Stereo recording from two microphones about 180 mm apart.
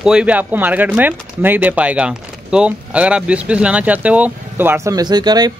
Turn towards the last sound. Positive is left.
turn(degrees=-20)  # may be behind; listen again after turning